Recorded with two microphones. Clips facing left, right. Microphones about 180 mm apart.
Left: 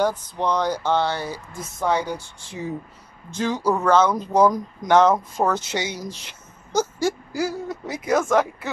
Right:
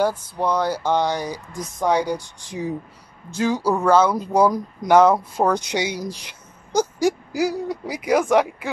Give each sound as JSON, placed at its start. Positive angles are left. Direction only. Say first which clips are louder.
{"t": 0.0, "sound": "speech", "louder": "right 1 dB", "side_deg": -10}